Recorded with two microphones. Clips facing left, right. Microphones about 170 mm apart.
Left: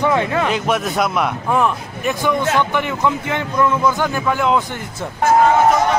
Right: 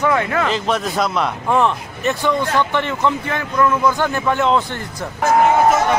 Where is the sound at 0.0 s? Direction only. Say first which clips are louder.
Left 1 dB; 20° left (ahead or behind).